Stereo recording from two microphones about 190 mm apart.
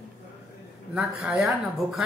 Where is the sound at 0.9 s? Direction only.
5° right (ahead or behind).